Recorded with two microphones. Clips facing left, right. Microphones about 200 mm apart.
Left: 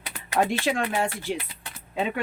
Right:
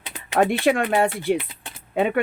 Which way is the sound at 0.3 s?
60° right (ahead or behind).